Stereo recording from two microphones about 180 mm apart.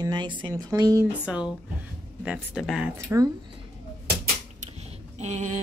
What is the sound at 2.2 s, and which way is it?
Speech, 5° right (ahead or behind).